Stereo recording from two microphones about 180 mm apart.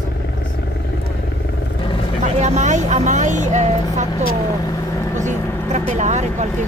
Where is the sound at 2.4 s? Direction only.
40° right (ahead or behind).